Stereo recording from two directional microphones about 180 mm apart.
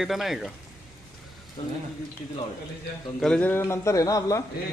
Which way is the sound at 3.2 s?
5° left (ahead or behind).